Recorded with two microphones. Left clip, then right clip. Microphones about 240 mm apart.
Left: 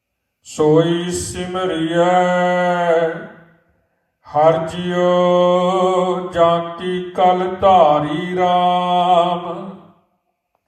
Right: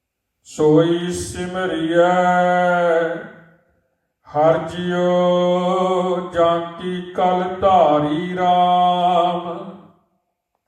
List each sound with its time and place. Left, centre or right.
0.4 s mantra: left
4.2 s mantra: left